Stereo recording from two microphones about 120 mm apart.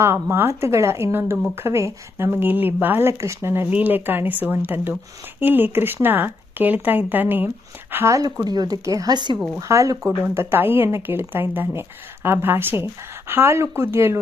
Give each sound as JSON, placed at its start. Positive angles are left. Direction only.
{"t": 0.0, "sound": "a woman's voice", "side_deg": -20}
{"t": 9.6, "sound": "a woman's voice", "side_deg": -25}